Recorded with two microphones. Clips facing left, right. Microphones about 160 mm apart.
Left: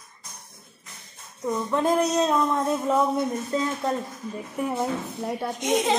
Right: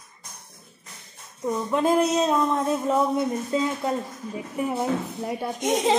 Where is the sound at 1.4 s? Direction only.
5° right (ahead or behind).